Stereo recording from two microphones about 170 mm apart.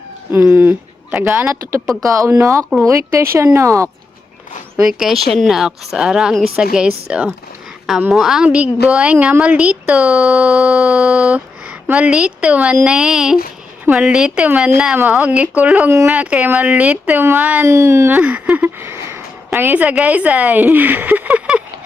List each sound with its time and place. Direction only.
0.3 s speech: 10° right (ahead or behind)
4.8 s a woman's voice: 5° right (ahead or behind)